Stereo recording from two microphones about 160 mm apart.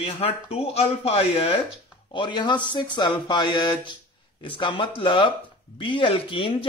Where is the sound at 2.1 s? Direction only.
30° left (ahead or behind).